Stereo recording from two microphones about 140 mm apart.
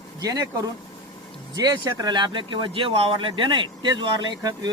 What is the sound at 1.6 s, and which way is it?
Speech, 25° right (ahead or behind).